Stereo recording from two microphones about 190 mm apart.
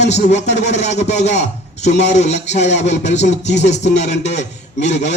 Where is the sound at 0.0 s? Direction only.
35° left (ahead or behind).